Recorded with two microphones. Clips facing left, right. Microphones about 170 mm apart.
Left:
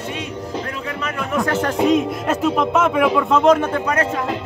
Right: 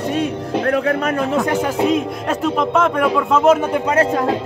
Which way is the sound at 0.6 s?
60° right (ahead or behind).